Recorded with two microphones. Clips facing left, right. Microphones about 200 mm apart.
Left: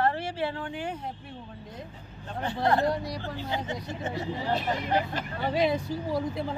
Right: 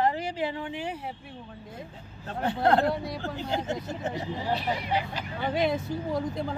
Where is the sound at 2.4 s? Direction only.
55° right (ahead or behind).